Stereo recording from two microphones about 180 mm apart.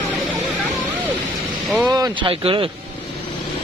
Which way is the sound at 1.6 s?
Centre (ahead or behind).